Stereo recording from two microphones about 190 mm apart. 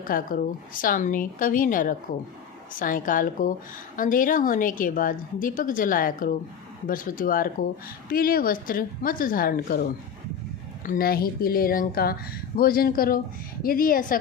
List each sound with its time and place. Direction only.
0.0 s a woman's voice: 45° left (ahead or behind)
10.8 s a woman's voice: 50° left (ahead or behind)